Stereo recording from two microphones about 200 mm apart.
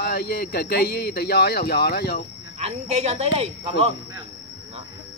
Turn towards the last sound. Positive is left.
turn(degrees=-30)  # may be behind; listen again after turning